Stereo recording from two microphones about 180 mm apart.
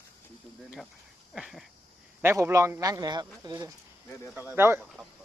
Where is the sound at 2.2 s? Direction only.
10° right (ahead or behind).